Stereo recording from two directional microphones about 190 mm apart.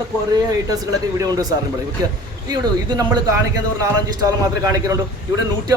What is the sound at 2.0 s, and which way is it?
A man's voice, 20° right (ahead or behind).